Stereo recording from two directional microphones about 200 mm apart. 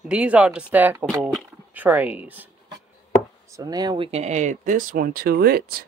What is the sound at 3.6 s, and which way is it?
Speech, 20° right (ahead or behind).